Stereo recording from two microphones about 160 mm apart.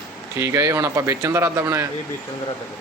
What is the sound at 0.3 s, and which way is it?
Speech, 15° right (ahead or behind).